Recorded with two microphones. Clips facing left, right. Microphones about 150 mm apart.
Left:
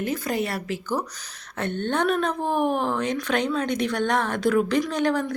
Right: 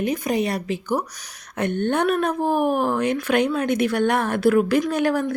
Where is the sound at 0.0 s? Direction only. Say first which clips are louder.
Right 4 dB; 20° right (ahead or behind).